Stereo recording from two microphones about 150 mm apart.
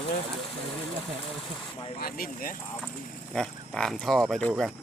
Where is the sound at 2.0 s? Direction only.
80° left.